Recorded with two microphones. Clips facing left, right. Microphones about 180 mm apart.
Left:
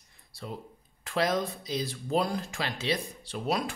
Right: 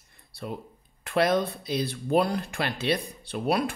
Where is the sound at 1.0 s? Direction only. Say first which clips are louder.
Right 4 dB; 60° right (ahead or behind).